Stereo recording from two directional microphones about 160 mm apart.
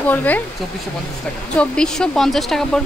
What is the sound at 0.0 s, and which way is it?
Speech, 10° left (ahead or behind).